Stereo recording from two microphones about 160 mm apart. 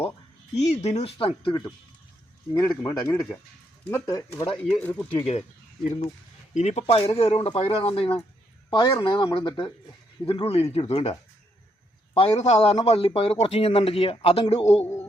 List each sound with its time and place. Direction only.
0.5 s speech: 45° left (ahead or behind); by 4.4 s 20° left (ahead or behind)
4.5 s speech: 10° left (ahead or behind)
5.1 s speech: 40° left (ahead or behind)
8.7 s speech: 20° left (ahead or behind); by 11.1 s 40° left (ahead or behind)
12.1 s speech: 40° left (ahead or behind)